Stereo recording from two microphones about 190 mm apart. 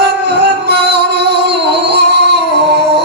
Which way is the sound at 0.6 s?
60° right (ahead or behind).